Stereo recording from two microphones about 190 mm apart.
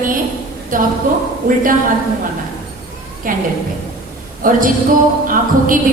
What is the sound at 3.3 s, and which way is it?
A woman's voice, 45° right (ahead or behind).